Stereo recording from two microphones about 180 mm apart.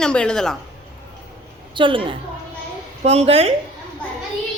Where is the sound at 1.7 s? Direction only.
30° right (ahead or behind).